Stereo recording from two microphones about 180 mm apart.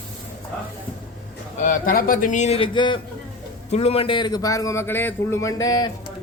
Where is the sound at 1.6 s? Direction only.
50° left (ahead or behind); by 5.9 s 20° left (ahead or behind).